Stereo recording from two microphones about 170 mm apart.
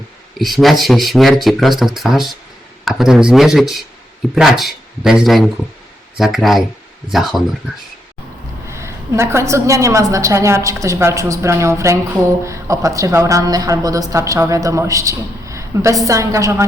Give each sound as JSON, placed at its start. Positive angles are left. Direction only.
{"t": 0.3, "sound": "speech", "side_deg": 0}
{"t": 8.6, "sound": "a woman's voice", "side_deg": -15}